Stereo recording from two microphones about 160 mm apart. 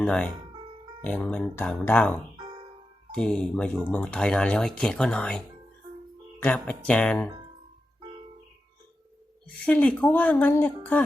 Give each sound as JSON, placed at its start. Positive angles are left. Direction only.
{"t": 0.0, "sound": "speech", "side_deg": 5}
{"t": 6.4, "sound": "speech", "side_deg": 10}
{"t": 9.6, "sound": "speech", "side_deg": 10}